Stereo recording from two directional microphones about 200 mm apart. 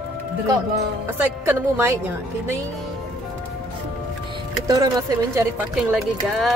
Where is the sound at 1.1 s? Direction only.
10° right (ahead or behind).